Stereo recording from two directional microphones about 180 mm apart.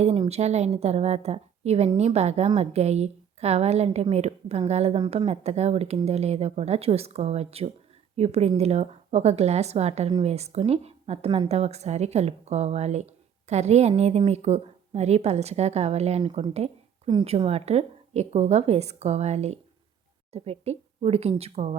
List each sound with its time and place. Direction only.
0.0 s a woman's voice: 35° right (ahead or behind)